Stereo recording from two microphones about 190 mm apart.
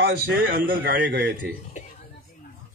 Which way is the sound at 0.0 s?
50° right (ahead or behind).